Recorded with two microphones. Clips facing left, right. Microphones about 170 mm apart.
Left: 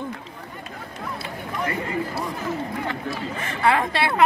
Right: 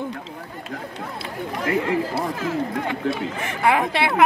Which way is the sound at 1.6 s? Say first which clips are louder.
Right 5 dB; 90° right.